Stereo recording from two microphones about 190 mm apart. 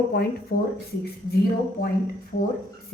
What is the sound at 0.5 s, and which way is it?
Speech, 65° left (ahead or behind).